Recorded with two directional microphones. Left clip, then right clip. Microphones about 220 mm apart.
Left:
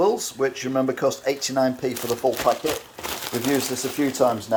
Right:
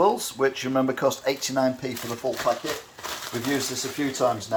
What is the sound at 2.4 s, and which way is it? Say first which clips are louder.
Speech: left 4 dB; 45° left (ahead or behind).